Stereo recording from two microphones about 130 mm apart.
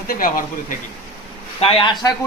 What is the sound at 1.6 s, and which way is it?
Speech, 45° left (ahead or behind).